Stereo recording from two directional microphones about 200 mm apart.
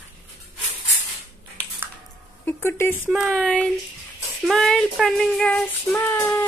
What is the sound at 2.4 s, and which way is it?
Speech, 10° left (ahead or behind).